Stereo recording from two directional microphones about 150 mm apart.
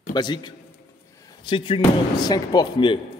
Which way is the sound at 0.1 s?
30° left (ahead or behind).